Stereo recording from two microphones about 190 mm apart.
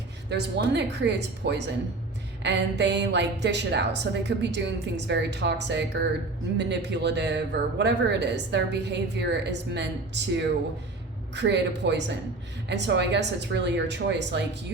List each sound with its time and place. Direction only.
0.3 s speech: 60° right (ahead or behind)
11.3 s speech: 65° right (ahead or behind)